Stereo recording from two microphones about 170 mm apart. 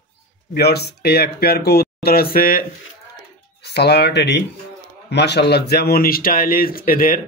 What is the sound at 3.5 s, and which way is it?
Speech, 75° left (ahead or behind).